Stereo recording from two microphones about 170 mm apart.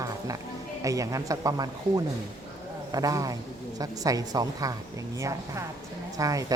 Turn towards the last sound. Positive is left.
turn(degrees=-20)  # may be behind; listen again after turning